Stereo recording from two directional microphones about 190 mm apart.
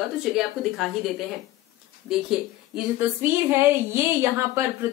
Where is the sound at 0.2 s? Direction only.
Centre (ahead or behind).